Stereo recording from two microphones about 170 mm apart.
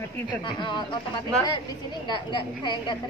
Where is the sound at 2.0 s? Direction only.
25° left (ahead or behind).